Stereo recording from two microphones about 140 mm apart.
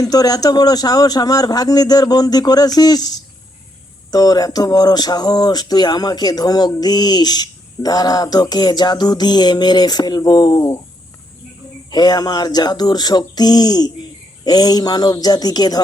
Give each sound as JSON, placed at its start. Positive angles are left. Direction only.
{"t": 0.0, "sound": "speech", "side_deg": 25}
{"t": 11.9, "sound": "speech", "side_deg": 30}